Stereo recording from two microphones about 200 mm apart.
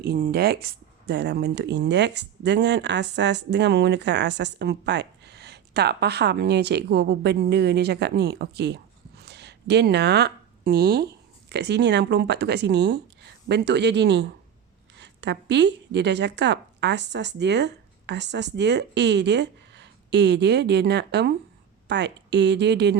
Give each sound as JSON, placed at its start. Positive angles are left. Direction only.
{"t": 0.0, "sound": "speech", "side_deg": -50}